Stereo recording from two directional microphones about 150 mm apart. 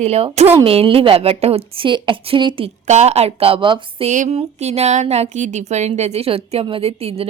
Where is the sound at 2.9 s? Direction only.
50° right (ahead or behind).